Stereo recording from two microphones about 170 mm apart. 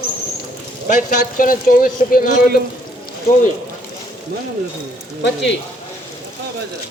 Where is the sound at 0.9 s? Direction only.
55° left (ahead or behind).